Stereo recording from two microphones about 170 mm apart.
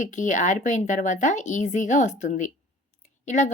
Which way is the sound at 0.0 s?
45° left (ahead or behind).